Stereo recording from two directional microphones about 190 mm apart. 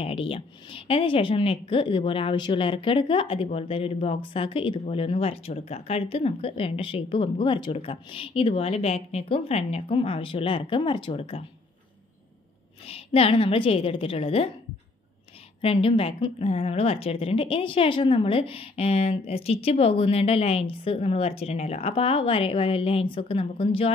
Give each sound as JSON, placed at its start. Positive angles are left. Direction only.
{"t": 0.0, "sound": "speech", "side_deg": 30}
{"t": 12.8, "sound": "speech", "side_deg": 30}
{"t": 15.6, "sound": "a woman's voice", "side_deg": 30}